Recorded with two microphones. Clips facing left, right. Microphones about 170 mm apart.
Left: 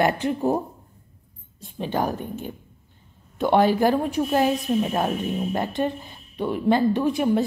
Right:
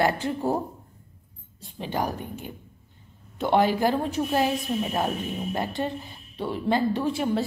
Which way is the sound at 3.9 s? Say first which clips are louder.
Left 3 dB; 15° left (ahead or behind).